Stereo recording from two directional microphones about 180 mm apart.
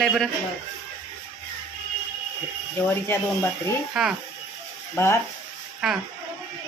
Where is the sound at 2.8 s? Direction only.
10° left (ahead or behind).